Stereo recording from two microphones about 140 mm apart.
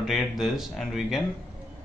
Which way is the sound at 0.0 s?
Centre (ahead or behind).